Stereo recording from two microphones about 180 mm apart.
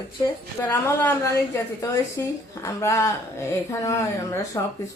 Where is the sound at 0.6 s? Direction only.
15° left (ahead or behind).